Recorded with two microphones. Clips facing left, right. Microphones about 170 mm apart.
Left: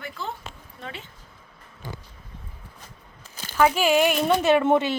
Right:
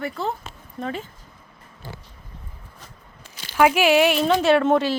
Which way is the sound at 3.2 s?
45° left (ahead or behind).